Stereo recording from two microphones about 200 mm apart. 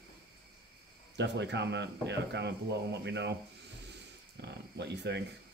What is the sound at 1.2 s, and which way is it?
Speech, 60° right (ahead or behind).